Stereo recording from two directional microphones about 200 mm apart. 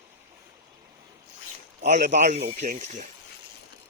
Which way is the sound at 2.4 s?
50° right (ahead or behind).